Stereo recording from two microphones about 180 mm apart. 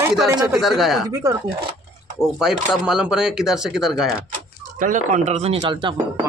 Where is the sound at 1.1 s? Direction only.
20° right (ahead or behind).